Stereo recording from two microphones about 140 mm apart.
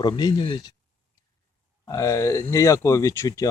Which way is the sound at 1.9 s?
25° left (ahead or behind).